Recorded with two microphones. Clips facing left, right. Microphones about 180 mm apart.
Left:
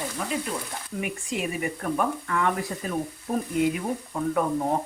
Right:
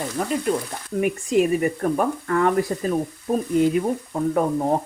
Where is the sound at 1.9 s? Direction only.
40° right (ahead or behind).